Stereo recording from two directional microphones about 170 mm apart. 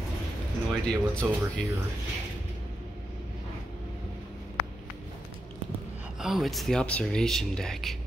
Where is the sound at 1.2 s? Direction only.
10° right (ahead or behind).